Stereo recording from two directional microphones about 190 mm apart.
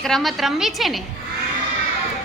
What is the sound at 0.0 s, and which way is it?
A woman's voice, centre (ahead or behind).